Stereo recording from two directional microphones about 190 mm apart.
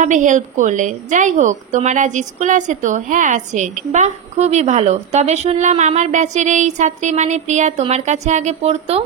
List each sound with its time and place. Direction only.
0.0 s a woman's voice: 40° right (ahead or behind)